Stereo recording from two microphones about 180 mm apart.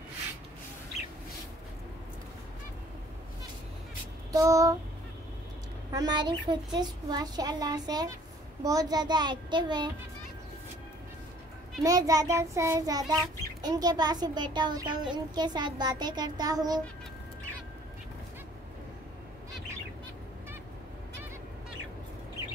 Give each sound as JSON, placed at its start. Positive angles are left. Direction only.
{"t": 4.3, "sound": "child singing", "side_deg": -20}
{"t": 5.9, "sound": "a woman's voice", "side_deg": -20}
{"t": 11.8, "sound": "a woman's voice", "side_deg": -20}